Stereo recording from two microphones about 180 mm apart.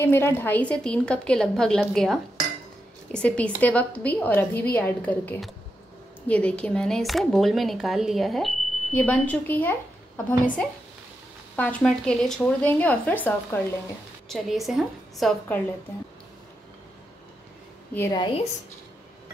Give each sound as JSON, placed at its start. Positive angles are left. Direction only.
{"t": 0.0, "sound": "speech", "side_deg": 10}
{"t": 11.5, "sound": "speech", "side_deg": 10}
{"t": 17.9, "sound": "speech", "side_deg": 15}